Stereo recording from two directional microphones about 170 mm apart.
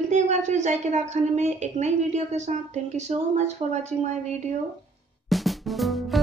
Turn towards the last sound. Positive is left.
turn(degrees=0)  # may be behind; listen again after turning